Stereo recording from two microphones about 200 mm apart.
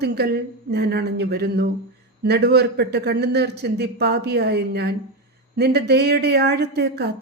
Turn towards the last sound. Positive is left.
turn(degrees=-55)  # may be behind; listen again after turning